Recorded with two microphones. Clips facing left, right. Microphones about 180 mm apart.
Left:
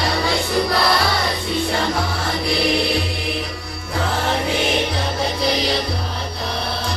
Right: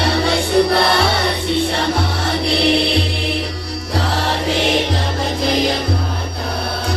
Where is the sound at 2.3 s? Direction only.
70° right (ahead or behind).